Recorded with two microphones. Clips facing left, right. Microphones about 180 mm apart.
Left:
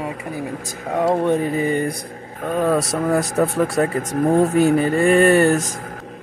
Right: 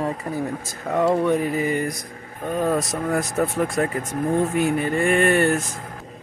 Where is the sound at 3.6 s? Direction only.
35° left (ahead or behind).